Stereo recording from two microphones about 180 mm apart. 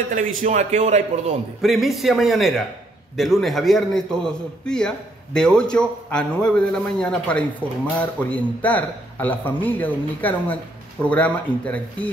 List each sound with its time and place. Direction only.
0.1 s a man's voice: 50° right (ahead or behind)
1.6 s a man's voice: centre (ahead or behind)